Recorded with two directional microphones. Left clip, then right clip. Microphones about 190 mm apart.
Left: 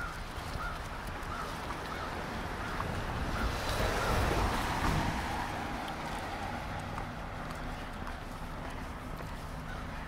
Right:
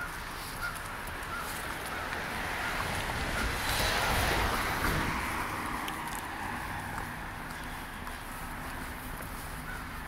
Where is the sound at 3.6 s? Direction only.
40° left (ahead or behind).